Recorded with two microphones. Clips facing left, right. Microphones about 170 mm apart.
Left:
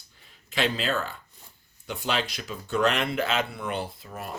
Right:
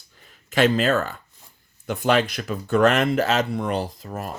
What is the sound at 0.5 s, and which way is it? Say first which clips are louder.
Speech: right 8 dB; 45° right (ahead or behind).